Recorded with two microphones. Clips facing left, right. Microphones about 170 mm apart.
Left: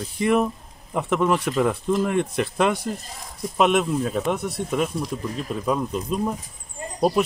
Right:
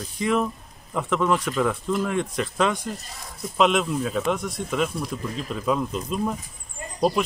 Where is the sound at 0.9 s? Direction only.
15° left (ahead or behind).